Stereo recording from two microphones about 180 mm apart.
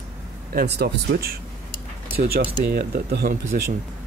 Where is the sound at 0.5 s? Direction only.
60° right (ahead or behind).